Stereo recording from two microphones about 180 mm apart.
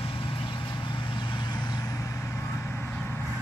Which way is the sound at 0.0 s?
30° left (ahead or behind).